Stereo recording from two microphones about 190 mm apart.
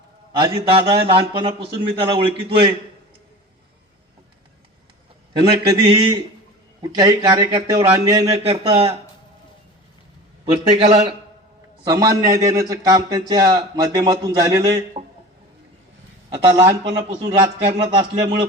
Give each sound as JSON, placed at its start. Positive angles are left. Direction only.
{"t": 0.3, "sound": "a man's voice", "side_deg": -25}
{"t": 5.4, "sound": "a man's voice", "side_deg": -25}
{"t": 10.5, "sound": "a man's voice", "side_deg": -25}
{"t": 16.3, "sound": "a man's voice", "side_deg": -20}